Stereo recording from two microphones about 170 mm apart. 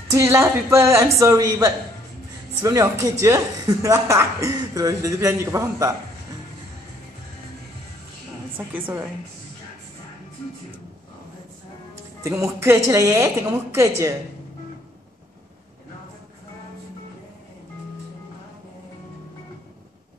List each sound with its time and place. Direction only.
0.1 s speech: 15° right (ahead or behind)
8.5 s speech: 10° right (ahead or behind)
11.9 s speech: 20° right (ahead or behind)